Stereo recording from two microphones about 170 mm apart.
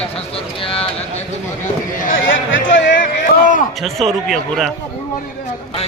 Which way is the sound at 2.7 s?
90° left.